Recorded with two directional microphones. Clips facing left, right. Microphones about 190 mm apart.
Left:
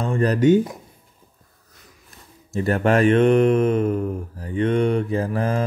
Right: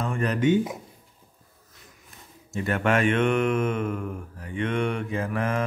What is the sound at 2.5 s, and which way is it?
Mantra, 35° left (ahead or behind).